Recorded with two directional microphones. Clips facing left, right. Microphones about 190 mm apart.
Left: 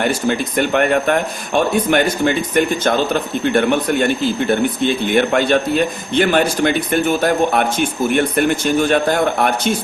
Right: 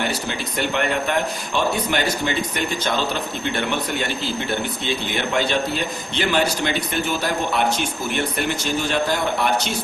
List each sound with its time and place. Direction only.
0.0 s a man's voice: 50° left (ahead or behind)